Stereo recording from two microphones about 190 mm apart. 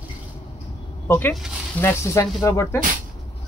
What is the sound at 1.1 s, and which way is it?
Speech, 10° left (ahead or behind).